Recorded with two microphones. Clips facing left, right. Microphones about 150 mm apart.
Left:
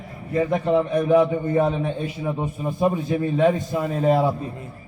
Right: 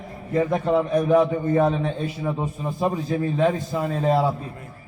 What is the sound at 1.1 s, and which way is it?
A man's voice, 10° left (ahead or behind).